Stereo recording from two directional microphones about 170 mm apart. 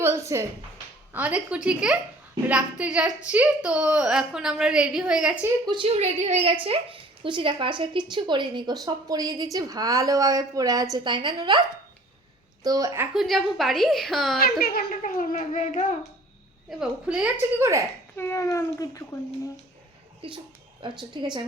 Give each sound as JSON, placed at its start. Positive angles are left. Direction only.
{"t": 0.0, "sound": "a woman's voice", "side_deg": -15}
{"t": 5.6, "sound": "a woman's voice", "side_deg": -30}
{"t": 6.0, "sound": "a woman's voice", "side_deg": -40}
{"t": 12.6, "sound": "a woman's voice", "side_deg": -20}
{"t": 13.1, "sound": "a woman's voice", "side_deg": 0}
{"t": 14.6, "sound": "a child's voice", "side_deg": 65}
{"t": 16.6, "sound": "a woman's voice", "side_deg": -5}
{"t": 17.6, "sound": "a woman's voice", "side_deg": -15}
{"t": 18.2, "sound": "a child's voice", "side_deg": 15}
{"t": 20.2, "sound": "a woman's voice", "side_deg": -30}